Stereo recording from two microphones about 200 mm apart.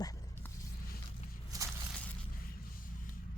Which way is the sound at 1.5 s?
15° right (ahead or behind).